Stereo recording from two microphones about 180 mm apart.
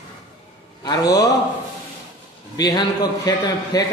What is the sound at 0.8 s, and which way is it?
Speech, 20° left (ahead or behind).